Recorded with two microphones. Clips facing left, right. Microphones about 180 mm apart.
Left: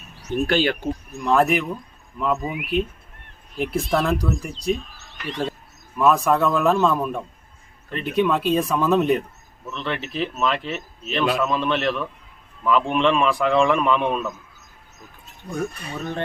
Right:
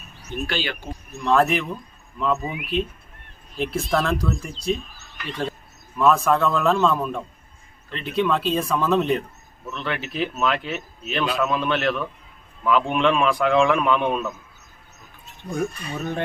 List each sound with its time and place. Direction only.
0.4 s speech: 50° left (ahead or behind)
1.2 s a man's voice: 10° left (ahead or behind)
6.0 s a man's voice: 15° left (ahead or behind)
9.6 s a man's voice: centre (ahead or behind)
15.4 s speech: 10° right (ahead or behind)